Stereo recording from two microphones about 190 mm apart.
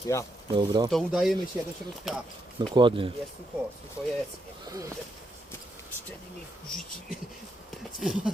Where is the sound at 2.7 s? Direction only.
25° right (ahead or behind).